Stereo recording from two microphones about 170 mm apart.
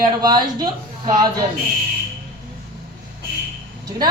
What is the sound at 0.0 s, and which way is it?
A man's voice, 25° right (ahead or behind).